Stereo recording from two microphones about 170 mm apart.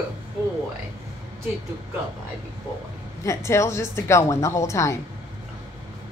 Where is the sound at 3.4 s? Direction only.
15° left (ahead or behind).